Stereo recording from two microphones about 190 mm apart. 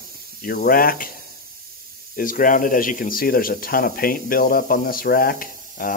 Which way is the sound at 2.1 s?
45° left (ahead or behind).